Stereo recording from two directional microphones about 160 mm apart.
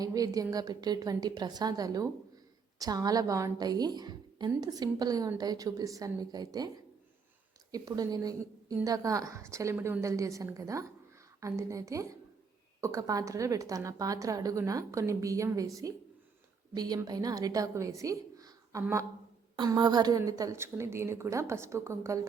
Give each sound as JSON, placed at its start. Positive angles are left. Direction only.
{"t": 0.0, "sound": "a woman's voice", "side_deg": -20}
{"t": 7.7, "sound": "a woman's voice", "side_deg": -25}